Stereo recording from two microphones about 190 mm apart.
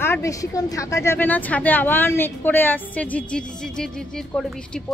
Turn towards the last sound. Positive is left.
turn(degrees=5)  # may be behind; listen again after turning